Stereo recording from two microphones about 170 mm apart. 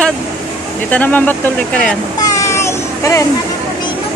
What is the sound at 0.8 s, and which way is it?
Speech, 10° left (ahead or behind).